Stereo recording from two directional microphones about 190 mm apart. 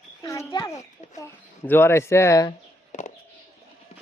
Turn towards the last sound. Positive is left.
turn(degrees=40)  # may be behind; listen again after turning